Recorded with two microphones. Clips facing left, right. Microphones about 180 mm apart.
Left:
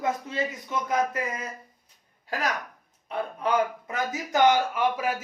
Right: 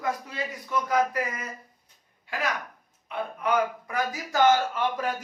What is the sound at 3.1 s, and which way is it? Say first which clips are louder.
Speech: even; 30° left (ahead or behind).